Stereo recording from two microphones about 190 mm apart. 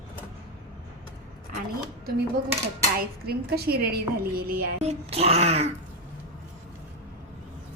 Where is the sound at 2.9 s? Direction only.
55° right (ahead or behind).